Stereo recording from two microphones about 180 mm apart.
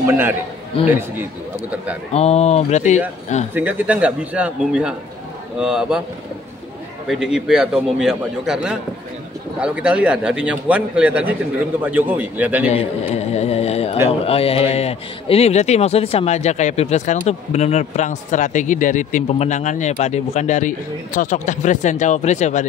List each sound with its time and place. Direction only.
0.0 s a man's voice: 10° right (ahead or behind)
2.1 s a man's voice: 35° left (ahead or behind)
3.5 s a man's voice: 10° right (ahead or behind)
7.1 s a man's voice: 5° right (ahead or behind)
12.6 s a man's voice: 35° left (ahead or behind)